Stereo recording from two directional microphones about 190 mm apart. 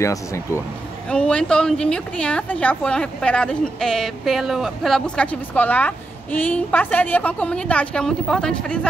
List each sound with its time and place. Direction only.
0.0 s speech: 15° left (ahead or behind)
1.1 s speech: 5° left (ahead or behind)